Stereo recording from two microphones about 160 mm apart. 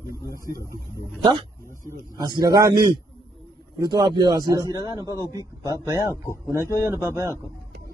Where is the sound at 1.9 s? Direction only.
25° right (ahead or behind).